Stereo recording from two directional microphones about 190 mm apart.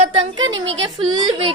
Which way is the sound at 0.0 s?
30° right (ahead or behind).